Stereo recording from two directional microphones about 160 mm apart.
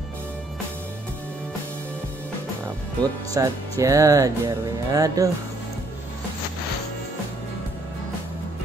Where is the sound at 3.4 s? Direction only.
20° right (ahead or behind).